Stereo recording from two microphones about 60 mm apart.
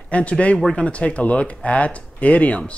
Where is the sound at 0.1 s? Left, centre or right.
Left.